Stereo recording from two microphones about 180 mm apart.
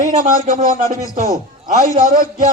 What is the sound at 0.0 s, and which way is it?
A man's voice, 45° right (ahead or behind).